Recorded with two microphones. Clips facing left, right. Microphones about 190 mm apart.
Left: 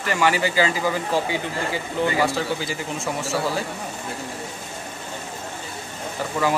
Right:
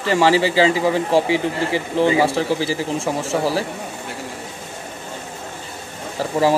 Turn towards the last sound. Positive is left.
turn(degrees=-30)  # may be behind; listen again after turning